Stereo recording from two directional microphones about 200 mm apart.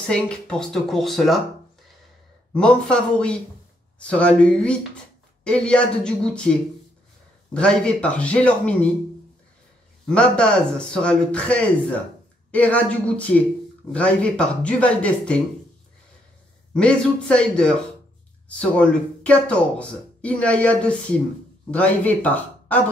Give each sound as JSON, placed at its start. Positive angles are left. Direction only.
{"t": 0.0, "sound": "speech", "side_deg": 5}
{"t": 2.5, "sound": "speech", "side_deg": 5}
{"t": 7.5, "sound": "speech", "side_deg": 5}
{"t": 10.0, "sound": "speech", "side_deg": 5}
{"t": 16.7, "sound": "speech", "side_deg": 5}